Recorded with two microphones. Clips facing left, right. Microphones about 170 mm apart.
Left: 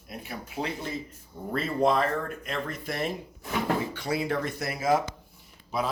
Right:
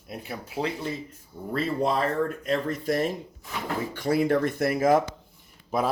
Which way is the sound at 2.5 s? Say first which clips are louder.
Right 7 dB; 40° right (ahead or behind).